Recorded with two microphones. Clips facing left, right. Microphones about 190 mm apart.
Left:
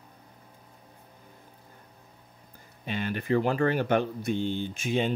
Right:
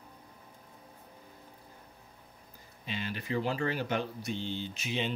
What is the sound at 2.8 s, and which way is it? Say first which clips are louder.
Speech: left 7 dB; 55° left (ahead or behind).